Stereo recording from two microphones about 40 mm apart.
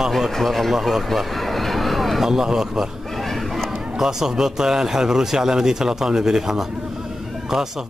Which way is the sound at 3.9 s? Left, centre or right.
Centre.